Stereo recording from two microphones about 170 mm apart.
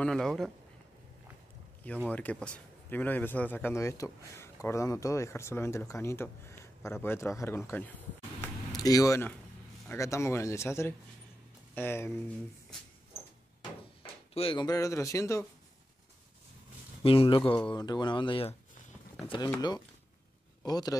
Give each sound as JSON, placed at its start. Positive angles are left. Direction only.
{"t": 0.0, "sound": "speech", "side_deg": 5}
{"t": 1.9, "sound": "a man's voice", "side_deg": 10}
{"t": 8.4, "sound": "a sound", "side_deg": 20}
{"t": 9.8, "sound": "a man's voice", "side_deg": 15}
{"t": 14.3, "sound": "speech", "side_deg": 30}
{"t": 17.0, "sound": "speech", "side_deg": 35}